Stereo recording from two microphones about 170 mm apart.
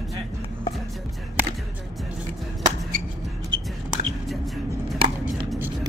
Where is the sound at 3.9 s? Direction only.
Centre (ahead or behind).